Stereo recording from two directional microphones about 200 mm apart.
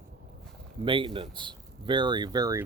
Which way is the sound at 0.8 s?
25° right (ahead or behind).